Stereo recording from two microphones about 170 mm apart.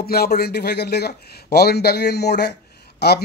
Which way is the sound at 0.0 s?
65° left (ahead or behind).